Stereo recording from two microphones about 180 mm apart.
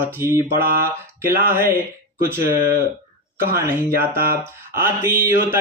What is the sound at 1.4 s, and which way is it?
Mantra, 10° right (ahead or behind).